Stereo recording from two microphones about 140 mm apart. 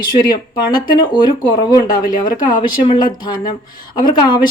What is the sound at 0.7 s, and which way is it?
A woman's voice, 35° left (ahead or behind).